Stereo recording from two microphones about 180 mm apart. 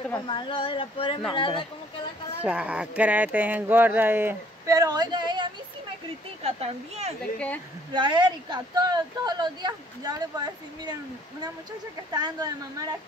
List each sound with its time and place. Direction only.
0.3 s speech: 25° left (ahead or behind)
2.4 s speech: 5° right (ahead or behind); by 5.5 s 25° right (ahead or behind)
6.4 s speech: 35° right (ahead or behind)
7.3 s speech: 10° left (ahead or behind)
7.9 s speech: 25° right (ahead or behind)
12.1 s speech: 20° right (ahead or behind)